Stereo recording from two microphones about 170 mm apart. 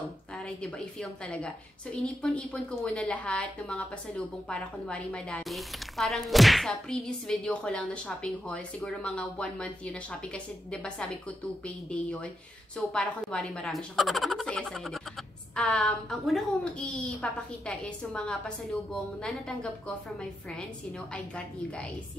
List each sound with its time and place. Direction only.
0.4 s a woman's voice: 5° left (ahead or behind)